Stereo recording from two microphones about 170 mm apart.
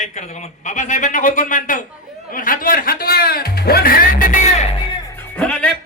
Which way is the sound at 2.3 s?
55° left (ahead or behind).